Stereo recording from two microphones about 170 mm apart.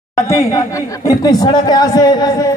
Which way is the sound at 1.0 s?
25° left (ahead or behind).